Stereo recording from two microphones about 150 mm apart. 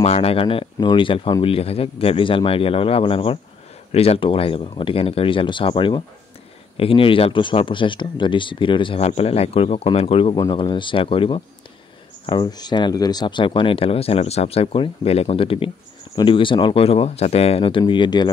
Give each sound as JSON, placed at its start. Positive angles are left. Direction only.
{"t": 0.0, "sound": "speech", "side_deg": 45}
{"t": 10.3, "sound": "speech", "side_deg": 30}